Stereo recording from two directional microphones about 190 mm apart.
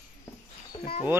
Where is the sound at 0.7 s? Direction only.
30° left (ahead or behind).